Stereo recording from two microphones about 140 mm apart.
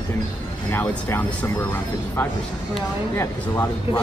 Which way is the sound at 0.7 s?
15° left (ahead or behind).